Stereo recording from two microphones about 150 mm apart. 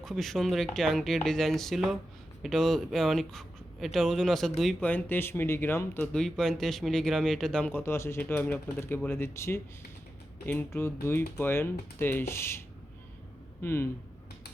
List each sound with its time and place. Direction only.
0.0 s speech: centre (ahead or behind)
6.1 s speech: centre (ahead or behind)